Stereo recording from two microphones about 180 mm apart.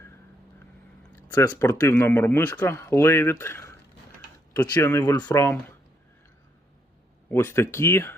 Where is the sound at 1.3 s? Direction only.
15° left (ahead or behind).